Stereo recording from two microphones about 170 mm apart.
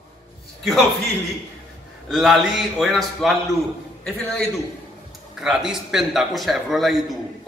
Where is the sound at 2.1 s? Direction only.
Centre (ahead or behind).